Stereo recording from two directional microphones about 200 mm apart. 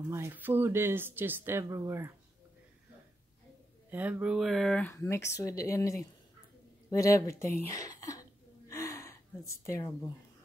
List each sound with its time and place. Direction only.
0.1 s speech: 10° right (ahead or behind)
3.9 s speech: 5° right (ahead or behind); by 7.4 s 15° left (ahead or behind)
7.6 s a sound: 15° left (ahead or behind)